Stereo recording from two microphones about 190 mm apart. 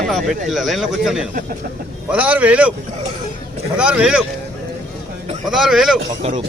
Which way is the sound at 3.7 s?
5° right (ahead or behind).